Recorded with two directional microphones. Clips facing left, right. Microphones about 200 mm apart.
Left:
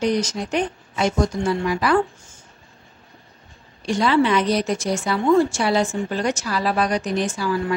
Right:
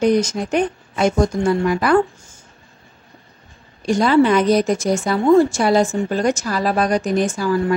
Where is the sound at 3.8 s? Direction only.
45° right (ahead or behind).